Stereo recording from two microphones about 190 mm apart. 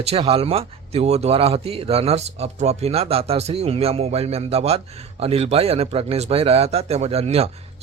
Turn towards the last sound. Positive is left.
turn(degrees=-35)  # may be behind; listen again after turning